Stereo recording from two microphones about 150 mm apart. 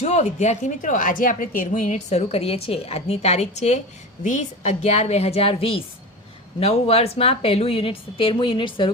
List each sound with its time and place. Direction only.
0.0 s a woman's voice: 50° left (ahead or behind); by 8.9 s 35° left (ahead or behind)